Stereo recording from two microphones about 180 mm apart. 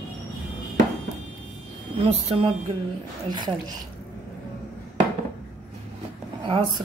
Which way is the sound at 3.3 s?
25° right (ahead or behind).